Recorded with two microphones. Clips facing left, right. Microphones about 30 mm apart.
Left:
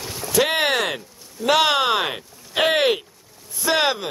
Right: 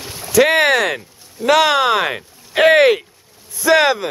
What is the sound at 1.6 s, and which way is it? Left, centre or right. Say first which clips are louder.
Speech: right 4 dB; centre.